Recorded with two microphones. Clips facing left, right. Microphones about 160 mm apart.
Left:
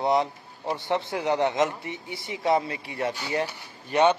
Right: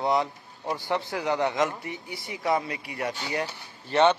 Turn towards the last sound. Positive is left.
turn(degrees=15)  # may be behind; listen again after turning